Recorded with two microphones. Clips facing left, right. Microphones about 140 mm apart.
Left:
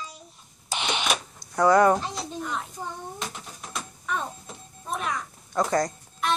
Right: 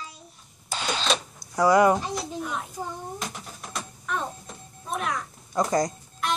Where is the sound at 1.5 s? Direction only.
10° right (ahead or behind).